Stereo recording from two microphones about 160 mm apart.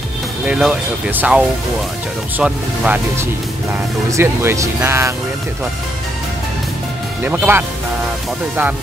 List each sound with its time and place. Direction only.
0.5 s speech: 5° right (ahead or behind)
4.1 s speech: 15° right (ahead or behind)
7.2 s speech: 10° right (ahead or behind)